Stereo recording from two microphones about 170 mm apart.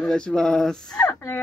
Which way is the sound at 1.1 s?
15° left (ahead or behind).